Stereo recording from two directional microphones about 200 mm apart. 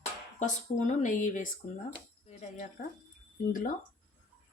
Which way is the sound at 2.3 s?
35° left (ahead or behind).